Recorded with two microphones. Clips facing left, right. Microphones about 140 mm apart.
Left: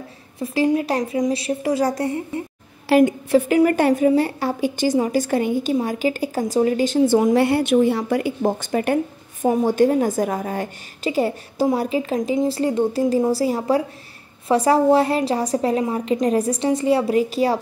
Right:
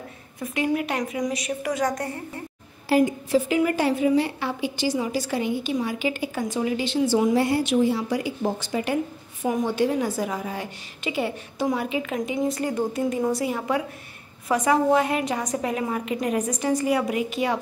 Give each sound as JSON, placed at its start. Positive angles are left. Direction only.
{"t": 0.4, "sound": "a woman's voice", "side_deg": 30}
{"t": 2.9, "sound": "a woman's voice", "side_deg": 65}
{"t": 7.3, "sound": "a woman's voice", "side_deg": 65}
{"t": 9.4, "sound": "a woman's voice", "side_deg": 40}